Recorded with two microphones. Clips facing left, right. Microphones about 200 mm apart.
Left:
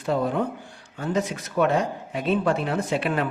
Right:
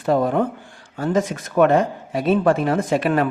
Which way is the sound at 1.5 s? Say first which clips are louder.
Right 6 dB; 55° right (ahead or behind).